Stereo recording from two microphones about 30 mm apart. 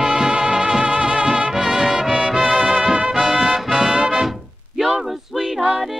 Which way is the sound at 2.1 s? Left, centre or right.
Right.